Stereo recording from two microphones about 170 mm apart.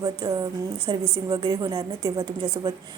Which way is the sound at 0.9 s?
30° right (ahead or behind).